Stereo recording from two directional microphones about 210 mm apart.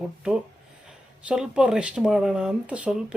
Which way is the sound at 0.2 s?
5° right (ahead or behind).